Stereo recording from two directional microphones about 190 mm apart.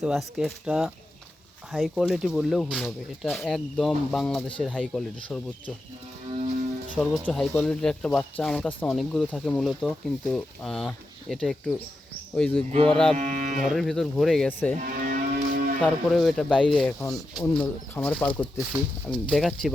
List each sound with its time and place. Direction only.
0.0 s speech: centre (ahead or behind)
6.9 s speech: centre (ahead or behind)
13.1 s cattle: 45° right (ahead or behind)
13.7 s speech: centre (ahead or behind)
14.8 s music: 45° right (ahead or behind)
15.8 s speech: centre (ahead or behind)
17.0 s speech: 15° left (ahead or behind); by 19.7 s centre (ahead or behind)